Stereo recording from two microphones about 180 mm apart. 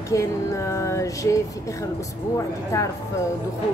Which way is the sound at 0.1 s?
15° left (ahead or behind).